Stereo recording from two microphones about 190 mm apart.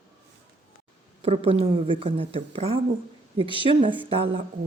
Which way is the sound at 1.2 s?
30° right (ahead or behind).